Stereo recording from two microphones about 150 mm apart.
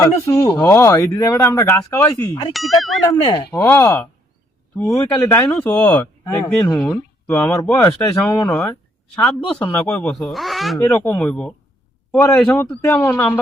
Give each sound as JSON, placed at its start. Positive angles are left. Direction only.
{"t": 0.0, "sound": "speech", "side_deg": 20}
{"t": 2.5, "sound": "speech", "side_deg": 0}
{"t": 3.1, "sound": "speech", "side_deg": 30}
{"t": 3.5, "sound": "speech", "side_deg": 15}
{"t": 5.5, "sound": "speech", "side_deg": 10}
{"t": 10.8, "sound": "speech", "side_deg": 15}
{"t": 12.7, "sound": "speech", "side_deg": 10}